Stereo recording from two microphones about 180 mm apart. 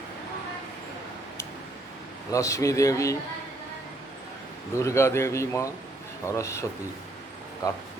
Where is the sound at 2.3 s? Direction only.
20° left (ahead or behind).